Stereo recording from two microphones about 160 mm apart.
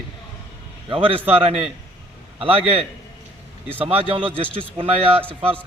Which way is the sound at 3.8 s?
35° right (ahead or behind).